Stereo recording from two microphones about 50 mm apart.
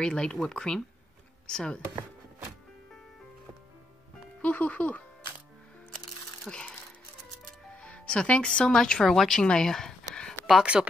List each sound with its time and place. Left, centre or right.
0.0 s speech: centre
4.4 s speech: left
6.5 s speech: centre
7.7 s speech: left
9.0 s speech: centre
10.6 s speech: right